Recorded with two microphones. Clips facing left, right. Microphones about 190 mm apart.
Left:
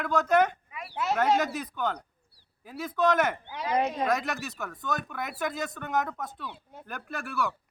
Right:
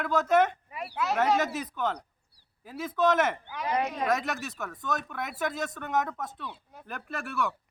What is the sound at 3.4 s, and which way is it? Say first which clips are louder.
Speech: left 2 dB; 25° left (ahead or behind).